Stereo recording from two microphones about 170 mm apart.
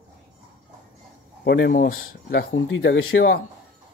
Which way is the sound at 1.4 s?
75° left (ahead or behind).